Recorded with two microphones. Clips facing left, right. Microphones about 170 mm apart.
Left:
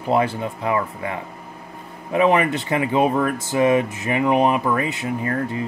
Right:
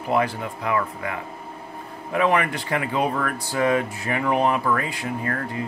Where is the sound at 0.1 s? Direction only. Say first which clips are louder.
Left 3 dB; 25° left (ahead or behind).